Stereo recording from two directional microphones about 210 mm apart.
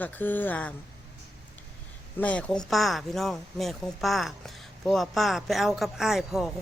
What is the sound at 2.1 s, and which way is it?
Speech, 5° left (ahead or behind).